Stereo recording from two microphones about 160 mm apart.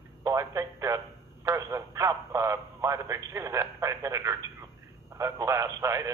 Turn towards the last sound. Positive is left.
turn(degrees=-15)  # may be behind; listen again after turning